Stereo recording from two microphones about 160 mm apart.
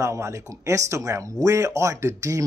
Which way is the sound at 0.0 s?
20° right (ahead or behind).